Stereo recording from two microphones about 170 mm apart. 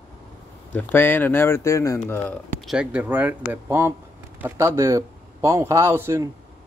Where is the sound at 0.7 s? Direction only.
10° left (ahead or behind).